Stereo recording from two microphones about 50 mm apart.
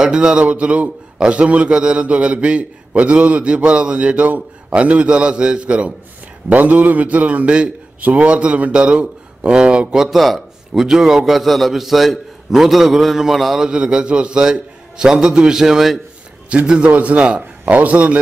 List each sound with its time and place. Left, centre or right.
0.0 s a man's voice: centre
6.5 s a man's voice: right; by 10.0 s centre
10.0 s a man's voice: centre
13.7 s a man's voice: centre
16.4 s a man's voice: right